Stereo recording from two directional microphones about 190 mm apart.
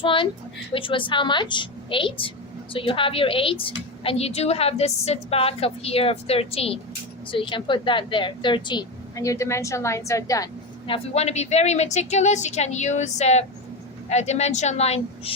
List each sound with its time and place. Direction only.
0.0 s a woman's voice: 25° left (ahead or behind)
10.8 s a woman's voice: 30° left (ahead or behind)